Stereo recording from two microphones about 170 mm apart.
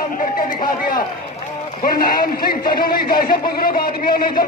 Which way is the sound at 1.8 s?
60° left (ahead or behind).